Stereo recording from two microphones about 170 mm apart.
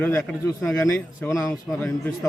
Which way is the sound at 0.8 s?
15° left (ahead or behind).